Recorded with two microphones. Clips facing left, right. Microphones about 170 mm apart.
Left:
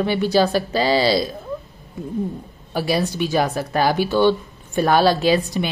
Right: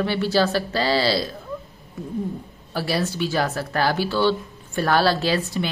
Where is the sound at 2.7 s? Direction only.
15° left (ahead or behind).